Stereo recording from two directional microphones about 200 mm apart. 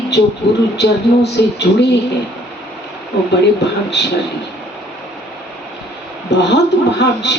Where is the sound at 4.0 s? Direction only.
60° left (ahead or behind).